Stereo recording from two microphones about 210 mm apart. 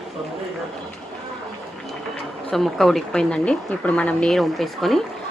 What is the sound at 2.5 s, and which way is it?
Speech, centre (ahead or behind).